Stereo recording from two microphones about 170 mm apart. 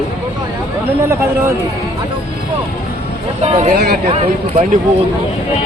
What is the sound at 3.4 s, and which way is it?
Speech, 40° right (ahead or behind).